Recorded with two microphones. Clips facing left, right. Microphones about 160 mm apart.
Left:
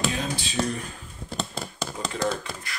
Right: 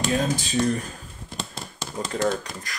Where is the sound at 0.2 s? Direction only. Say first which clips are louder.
Right 5 dB; 45° right (ahead or behind).